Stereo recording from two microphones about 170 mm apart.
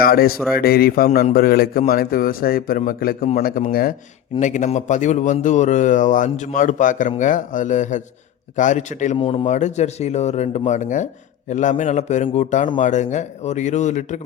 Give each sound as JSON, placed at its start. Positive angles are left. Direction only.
{"t": 0.0, "sound": "a man's voice", "side_deg": 60}
{"t": 4.4, "sound": "speech", "side_deg": 45}
{"t": 9.1, "sound": "speech", "side_deg": 30}
{"t": 9.5, "sound": "speech", "side_deg": 45}